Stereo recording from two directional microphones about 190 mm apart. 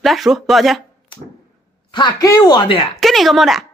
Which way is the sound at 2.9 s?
Centre (ahead or behind).